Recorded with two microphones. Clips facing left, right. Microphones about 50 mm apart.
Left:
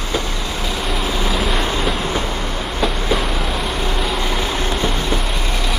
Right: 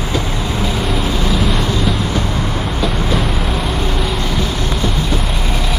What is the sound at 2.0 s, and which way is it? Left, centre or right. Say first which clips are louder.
Vehicle: right 2 dB; centre.